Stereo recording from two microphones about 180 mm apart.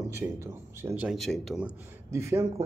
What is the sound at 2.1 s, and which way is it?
Speech, 15° right (ahead or behind).